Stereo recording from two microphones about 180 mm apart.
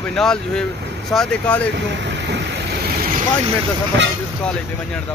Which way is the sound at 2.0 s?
75° right (ahead or behind).